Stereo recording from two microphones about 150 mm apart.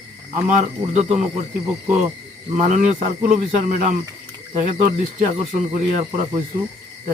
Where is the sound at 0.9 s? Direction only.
50° right (ahead or behind).